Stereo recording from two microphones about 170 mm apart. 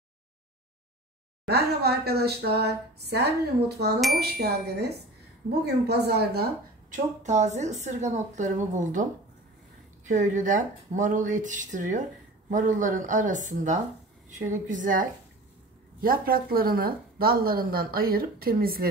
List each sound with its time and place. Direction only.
1.5 s speech: 70° right (ahead or behind)
4.2 s speech: 70° right (ahead or behind)
6.9 s a woman's voice: 45° right (ahead or behind)
10.0 s a woman's voice: 45° right (ahead or behind)